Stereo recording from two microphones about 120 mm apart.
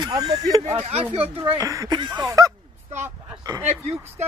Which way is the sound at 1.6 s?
30° right (ahead or behind).